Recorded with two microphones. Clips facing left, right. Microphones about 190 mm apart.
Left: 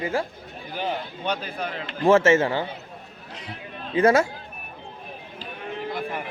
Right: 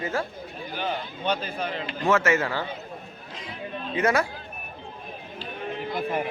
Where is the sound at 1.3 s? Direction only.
10° left (ahead or behind).